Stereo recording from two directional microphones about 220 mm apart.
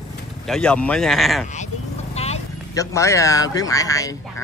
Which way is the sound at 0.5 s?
5° left (ahead or behind).